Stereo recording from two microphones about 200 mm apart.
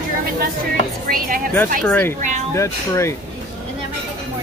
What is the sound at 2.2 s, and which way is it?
Speech, 40° right (ahead or behind).